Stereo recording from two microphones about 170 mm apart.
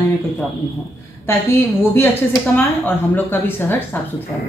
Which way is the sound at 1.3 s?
15° left (ahead or behind).